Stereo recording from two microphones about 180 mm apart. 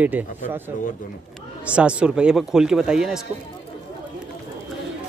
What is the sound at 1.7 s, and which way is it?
Speech, 5° right (ahead or behind).